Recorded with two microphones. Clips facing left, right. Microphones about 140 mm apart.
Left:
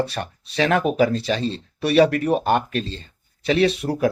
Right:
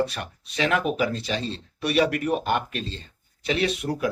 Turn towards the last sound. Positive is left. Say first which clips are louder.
# left 6 dB
turn(degrees=35)  # may be behind; listen again after turning